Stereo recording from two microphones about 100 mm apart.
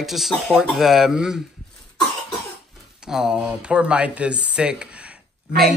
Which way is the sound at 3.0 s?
5° right (ahead or behind).